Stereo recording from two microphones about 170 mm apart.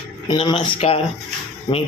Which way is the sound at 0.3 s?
30° left (ahead or behind).